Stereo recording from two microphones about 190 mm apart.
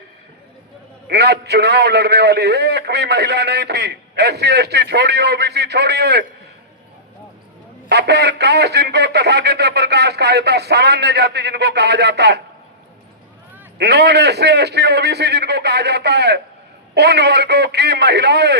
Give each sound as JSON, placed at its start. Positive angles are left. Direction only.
{"t": 1.0, "sound": "a man's voice", "side_deg": -60}
{"t": 7.9, "sound": "a man's voice", "side_deg": -60}
{"t": 13.7, "sound": "a man's voice", "side_deg": -60}